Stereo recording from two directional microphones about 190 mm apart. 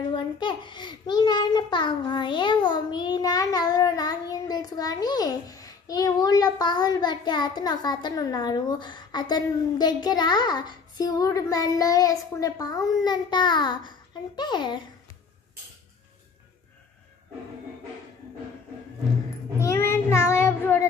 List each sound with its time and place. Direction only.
0.1 s a child's voice: 25° left (ahead or behind)
19.6 s child singing: 15° left (ahead or behind)